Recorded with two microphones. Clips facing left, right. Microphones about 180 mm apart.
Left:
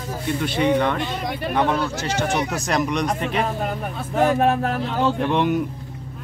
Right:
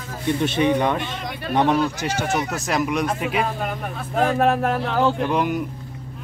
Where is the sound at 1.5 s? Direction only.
20° right (ahead or behind).